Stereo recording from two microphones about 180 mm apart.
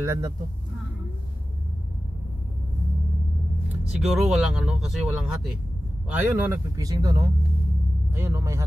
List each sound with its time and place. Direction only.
0.0 s speech: 15° right (ahead or behind)
3.6 s speech: 5° right (ahead or behind)